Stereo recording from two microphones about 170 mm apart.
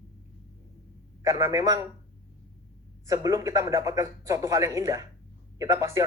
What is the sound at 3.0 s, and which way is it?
Speech, 20° right (ahead or behind).